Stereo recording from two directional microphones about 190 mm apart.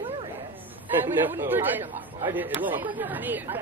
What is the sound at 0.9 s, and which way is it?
Speech, 10° right (ahead or behind).